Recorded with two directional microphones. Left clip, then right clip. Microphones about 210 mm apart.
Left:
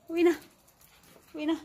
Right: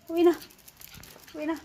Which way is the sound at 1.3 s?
20° left (ahead or behind).